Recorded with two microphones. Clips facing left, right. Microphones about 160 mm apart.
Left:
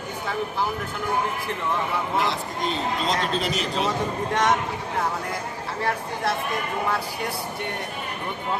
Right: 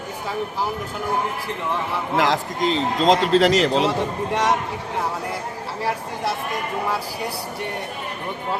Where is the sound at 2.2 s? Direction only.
90° right.